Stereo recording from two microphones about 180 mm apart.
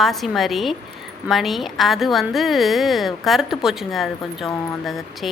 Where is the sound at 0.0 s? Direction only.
Centre (ahead or behind).